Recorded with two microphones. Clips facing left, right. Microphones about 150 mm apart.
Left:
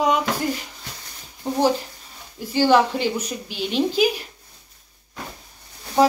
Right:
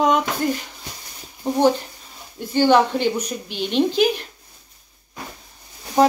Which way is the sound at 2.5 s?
5° left (ahead or behind).